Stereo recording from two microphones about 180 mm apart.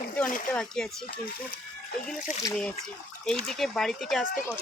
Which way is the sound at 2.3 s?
40° left (ahead or behind).